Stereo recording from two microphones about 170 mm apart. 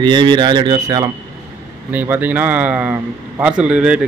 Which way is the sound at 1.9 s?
10° right (ahead or behind).